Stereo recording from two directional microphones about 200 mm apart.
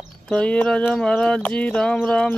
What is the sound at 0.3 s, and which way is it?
Speech, 5° left (ahead or behind).